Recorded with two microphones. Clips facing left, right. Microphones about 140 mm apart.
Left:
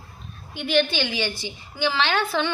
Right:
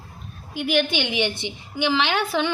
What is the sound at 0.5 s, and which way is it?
A woman's voice, 10° right (ahead or behind).